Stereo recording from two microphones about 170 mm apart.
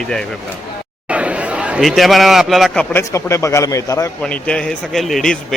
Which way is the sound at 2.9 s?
15° left (ahead or behind).